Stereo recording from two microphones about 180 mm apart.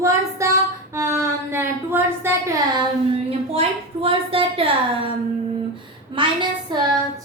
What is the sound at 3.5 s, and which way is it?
A woman's voice, 30° right (ahead or behind).